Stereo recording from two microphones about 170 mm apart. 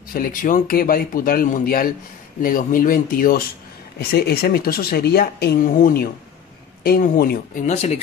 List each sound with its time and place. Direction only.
0.1 s speech: 55° left (ahead or behind); by 8.0 s 40° left (ahead or behind)